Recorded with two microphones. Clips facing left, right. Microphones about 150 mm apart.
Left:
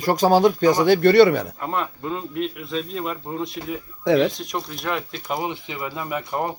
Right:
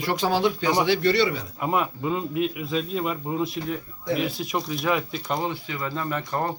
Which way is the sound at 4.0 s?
90° left.